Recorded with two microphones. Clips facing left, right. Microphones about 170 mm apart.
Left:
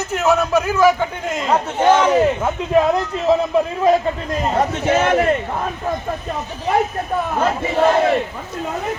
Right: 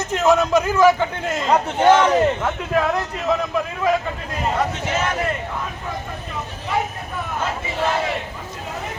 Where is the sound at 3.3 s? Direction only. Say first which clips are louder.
Left 6 dB; 30° left (ahead or behind).